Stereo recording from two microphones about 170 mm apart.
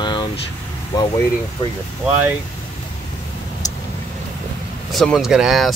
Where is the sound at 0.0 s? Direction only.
25° left (ahead or behind).